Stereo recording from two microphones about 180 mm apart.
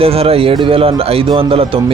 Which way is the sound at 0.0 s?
35° right (ahead or behind).